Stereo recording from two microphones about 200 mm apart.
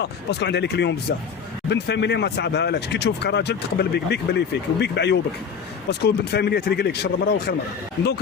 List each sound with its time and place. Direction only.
0.0 s speech: 60° left (ahead or behind)